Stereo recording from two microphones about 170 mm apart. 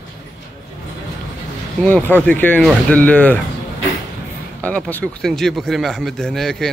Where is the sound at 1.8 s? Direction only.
5° left (ahead or behind).